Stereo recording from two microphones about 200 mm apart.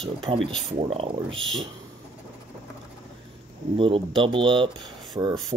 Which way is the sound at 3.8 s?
25° right (ahead or behind).